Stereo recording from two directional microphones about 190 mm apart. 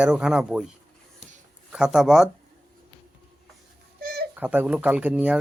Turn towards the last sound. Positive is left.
turn(degrees=-5)  # may be behind; listen again after turning